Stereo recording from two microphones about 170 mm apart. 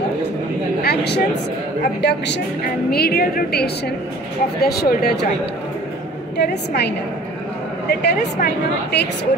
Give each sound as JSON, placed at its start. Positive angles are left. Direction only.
{"t": 0.8, "sound": "a woman's voice", "side_deg": 80}
{"t": 2.9, "sound": "a woman's voice", "side_deg": 65}
{"t": 6.3, "sound": "a woman's voice", "side_deg": 75}
{"t": 7.9, "sound": "a woman's voice", "side_deg": 75}